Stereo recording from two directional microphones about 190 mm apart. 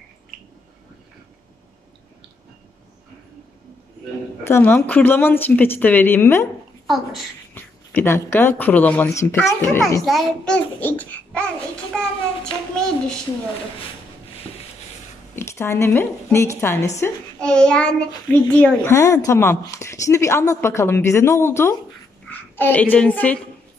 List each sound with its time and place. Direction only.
4.5 s a woman's voice: 10° left (ahead or behind)
7.5 s a woman's voice: 10° left (ahead or behind)
10.0 s a child's voice: centre (ahead or behind)
15.3 s a woman's voice: 15° left (ahead or behind)